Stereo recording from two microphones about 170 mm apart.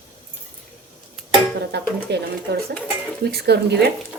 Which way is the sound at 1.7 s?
80° right.